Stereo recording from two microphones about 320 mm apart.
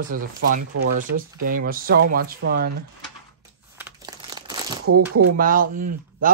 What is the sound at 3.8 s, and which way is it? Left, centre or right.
Crumpling, centre.